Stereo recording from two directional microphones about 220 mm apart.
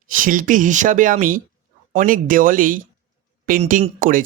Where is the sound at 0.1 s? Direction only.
40° right (ahead or behind).